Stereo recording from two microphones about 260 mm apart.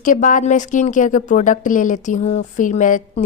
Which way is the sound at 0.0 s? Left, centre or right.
Left.